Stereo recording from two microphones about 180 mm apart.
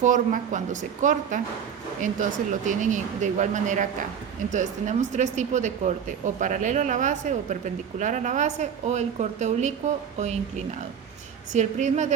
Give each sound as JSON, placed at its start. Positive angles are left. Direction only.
{"t": 0.0, "sound": "speech", "side_deg": -45}
{"t": 11.5, "sound": "speech", "side_deg": -40}